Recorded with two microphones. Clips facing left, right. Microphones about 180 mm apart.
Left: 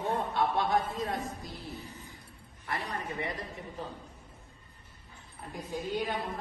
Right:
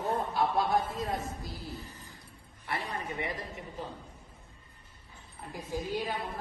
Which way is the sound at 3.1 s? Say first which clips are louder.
Even; 20° right (ahead or behind).